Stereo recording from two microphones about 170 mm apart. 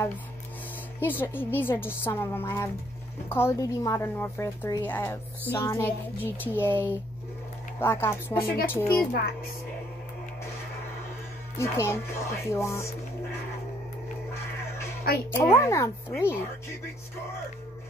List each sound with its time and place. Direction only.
1.0 s speech: 10° left (ahead or behind)
11.5 s speech: 15° left (ahead or behind)
15.3 s speech: 15° left (ahead or behind)